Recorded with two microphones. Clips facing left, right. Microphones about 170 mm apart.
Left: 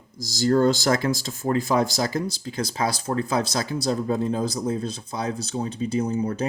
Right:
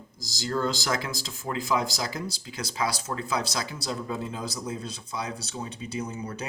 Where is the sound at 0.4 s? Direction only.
45° left (ahead or behind).